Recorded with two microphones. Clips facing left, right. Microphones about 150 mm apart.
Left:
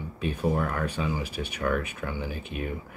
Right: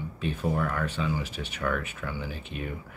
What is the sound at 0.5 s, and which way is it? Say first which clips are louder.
Speech: left 1 dB; 30° left (ahead or behind).